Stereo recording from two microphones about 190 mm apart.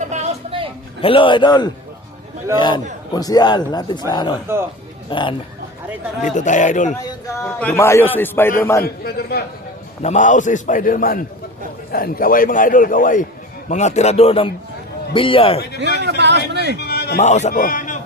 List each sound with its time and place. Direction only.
0.0 s music: 35° right (ahead or behind)
1.0 s speech: 25° left (ahead or behind)
6.2 s a man's voice: 40° left (ahead or behind)
7.0 s a man's voice: 15° left (ahead or behind)
8.8 s a man's voice: 55° left (ahead or behind)
10.0 s a man's voice: 40° left (ahead or behind)
15.8 s speech: 65° right (ahead or behind)
16.7 s music: 55° left (ahead or behind)
17.2 s a man's voice: 35° left (ahead or behind)
17.5 s speech: 45° left (ahead or behind)